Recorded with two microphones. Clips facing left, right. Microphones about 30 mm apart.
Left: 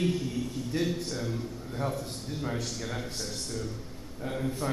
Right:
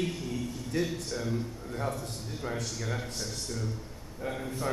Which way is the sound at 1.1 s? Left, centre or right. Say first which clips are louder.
Right 1 dB; centre.